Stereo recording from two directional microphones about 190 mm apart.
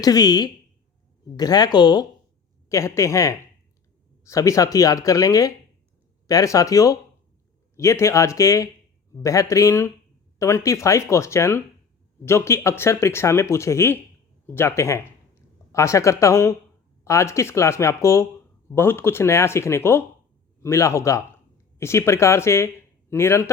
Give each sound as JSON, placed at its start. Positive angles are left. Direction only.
{"t": 0.0, "sound": "speech", "side_deg": 20}